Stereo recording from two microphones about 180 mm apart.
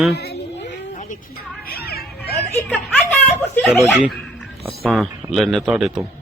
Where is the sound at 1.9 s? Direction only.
60° left (ahead or behind).